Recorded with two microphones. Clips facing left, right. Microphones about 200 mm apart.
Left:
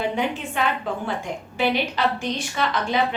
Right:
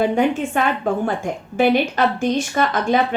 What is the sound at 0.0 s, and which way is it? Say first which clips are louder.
A woman's voice: right 7 dB; 50° right (ahead or behind).